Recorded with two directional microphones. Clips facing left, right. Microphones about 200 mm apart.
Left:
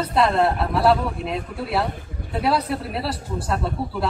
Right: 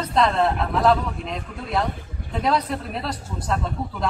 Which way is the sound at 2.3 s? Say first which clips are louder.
Left 1 dB; 5° left (ahead or behind).